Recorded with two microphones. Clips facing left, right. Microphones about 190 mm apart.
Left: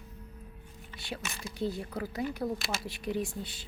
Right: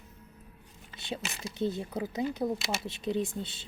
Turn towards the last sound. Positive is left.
turn(degrees=-25)  # may be behind; listen again after turning